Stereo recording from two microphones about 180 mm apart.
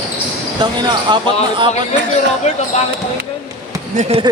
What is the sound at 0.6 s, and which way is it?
Speech, 25° right (ahead or behind).